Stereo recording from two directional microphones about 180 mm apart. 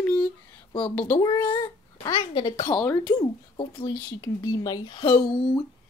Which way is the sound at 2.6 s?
15° left (ahead or behind).